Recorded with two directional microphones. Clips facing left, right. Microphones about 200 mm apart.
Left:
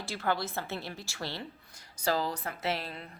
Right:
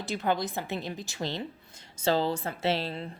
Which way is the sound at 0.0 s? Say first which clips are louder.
Right 3 dB; 20° right (ahead or behind).